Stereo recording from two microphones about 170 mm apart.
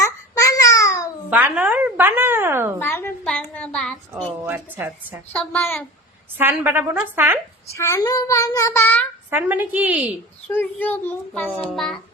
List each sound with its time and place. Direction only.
0.0 s babbling: 20° left (ahead or behind)
1.3 s speech: 10° right (ahead or behind)
2.7 s a woman's voice: 15° left (ahead or behind)
3.5 s child singing: 5° left (ahead or behind)
4.4 s speech: 15° right (ahead or behind)
5.3 s a child's voice: 10° left (ahead or behind)
6.3 s speech: 10° right (ahead or behind)
7.7 s a child's voice: 15° left (ahead or behind)
9.3 s speech: 10° right (ahead or behind)
10.5 s a child's voice: 10° left (ahead or behind)